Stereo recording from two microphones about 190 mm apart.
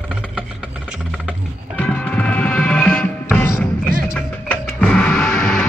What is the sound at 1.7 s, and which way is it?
Music, 5° left (ahead or behind).